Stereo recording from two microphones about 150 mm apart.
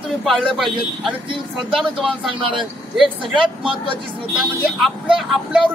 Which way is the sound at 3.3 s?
35° right (ahead or behind).